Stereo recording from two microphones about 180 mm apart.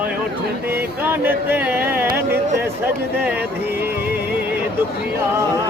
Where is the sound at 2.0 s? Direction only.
60° right (ahead or behind).